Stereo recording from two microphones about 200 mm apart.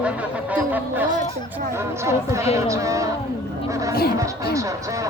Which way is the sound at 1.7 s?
15° right (ahead or behind).